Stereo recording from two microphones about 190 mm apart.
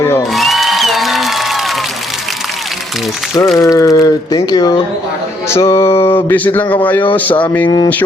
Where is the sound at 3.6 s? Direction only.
15° left (ahead or behind).